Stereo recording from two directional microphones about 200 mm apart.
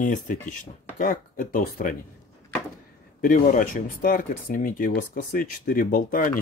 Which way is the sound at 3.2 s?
45° left (ahead or behind).